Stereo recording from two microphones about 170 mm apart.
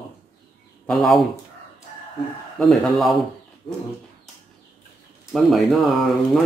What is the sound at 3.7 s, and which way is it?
Bird, 35° left (ahead or behind).